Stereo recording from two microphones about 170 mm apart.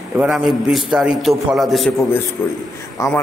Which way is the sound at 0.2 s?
5° right (ahead or behind).